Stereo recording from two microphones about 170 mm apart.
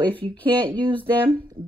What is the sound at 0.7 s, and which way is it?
Speech, 30° right (ahead or behind).